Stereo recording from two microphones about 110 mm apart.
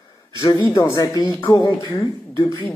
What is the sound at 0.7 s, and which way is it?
A man's voice, 35° left (ahead or behind).